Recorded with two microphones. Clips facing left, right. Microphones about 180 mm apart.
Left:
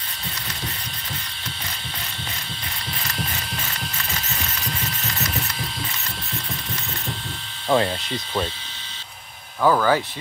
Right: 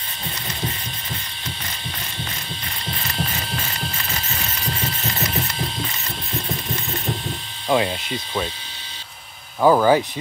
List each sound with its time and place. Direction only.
7.6 s speech: 10° right (ahead or behind)
9.6 s speech: 20° right (ahead or behind)